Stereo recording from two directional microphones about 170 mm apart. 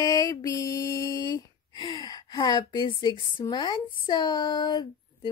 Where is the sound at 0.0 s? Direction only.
20° left (ahead or behind).